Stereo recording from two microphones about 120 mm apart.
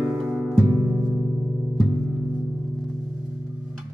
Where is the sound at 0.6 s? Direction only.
25° right (ahead or behind).